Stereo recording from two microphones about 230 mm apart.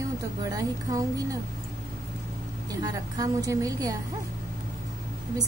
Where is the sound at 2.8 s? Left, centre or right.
Centre.